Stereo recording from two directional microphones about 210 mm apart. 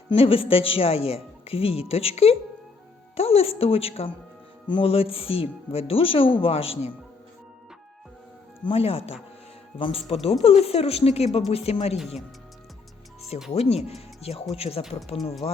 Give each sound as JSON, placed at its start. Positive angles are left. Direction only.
{"t": 0.1, "sound": "speech", "side_deg": 25}
{"t": 8.6, "sound": "speech", "side_deg": 25}
{"t": 13.5, "sound": "speech", "side_deg": 30}